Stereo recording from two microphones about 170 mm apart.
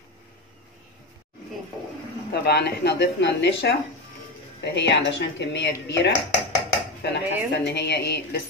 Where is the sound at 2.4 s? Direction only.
75° left (ahead or behind).